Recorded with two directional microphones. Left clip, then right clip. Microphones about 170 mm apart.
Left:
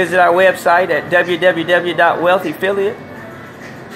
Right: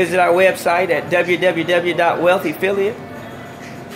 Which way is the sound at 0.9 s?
45° right (ahead or behind).